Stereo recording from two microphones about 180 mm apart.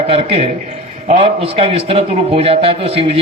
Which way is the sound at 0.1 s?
30° right (ahead or behind).